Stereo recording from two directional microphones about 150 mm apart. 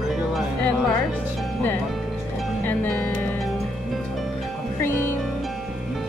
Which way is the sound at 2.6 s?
10° left (ahead or behind).